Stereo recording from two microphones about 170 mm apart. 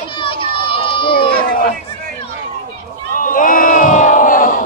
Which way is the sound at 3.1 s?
55° left (ahead or behind).